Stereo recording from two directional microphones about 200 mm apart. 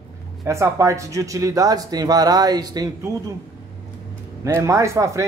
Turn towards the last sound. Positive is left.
turn(degrees=-15)  # may be behind; listen again after turning